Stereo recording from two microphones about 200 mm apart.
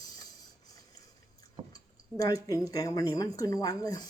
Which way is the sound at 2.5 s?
15° left (ahead or behind).